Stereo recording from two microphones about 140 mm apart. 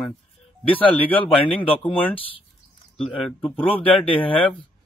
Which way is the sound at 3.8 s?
40° left (ahead or behind).